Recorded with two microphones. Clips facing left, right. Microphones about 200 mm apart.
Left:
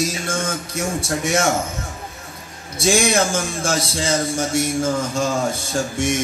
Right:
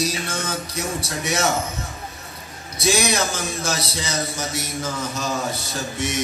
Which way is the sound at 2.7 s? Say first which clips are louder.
Left 4 dB; 50° left (ahead or behind).